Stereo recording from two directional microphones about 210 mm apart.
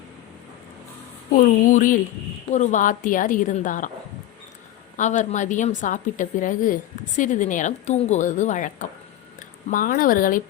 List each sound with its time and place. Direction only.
1.4 s a woman's voice: 40° left (ahead or behind)
4.9 s a woman's voice: 35° left (ahead or behind)